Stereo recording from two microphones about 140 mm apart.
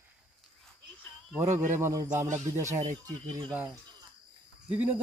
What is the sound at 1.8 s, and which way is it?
Speech, 20° right (ahead or behind).